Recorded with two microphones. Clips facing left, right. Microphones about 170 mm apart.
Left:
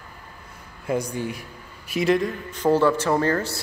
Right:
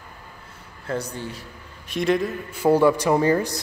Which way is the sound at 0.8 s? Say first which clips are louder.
Left 3 dB; 10° left (ahead or behind).